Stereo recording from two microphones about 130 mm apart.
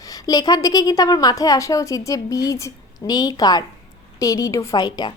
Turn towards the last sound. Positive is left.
turn(degrees=35)  # may be behind; listen again after turning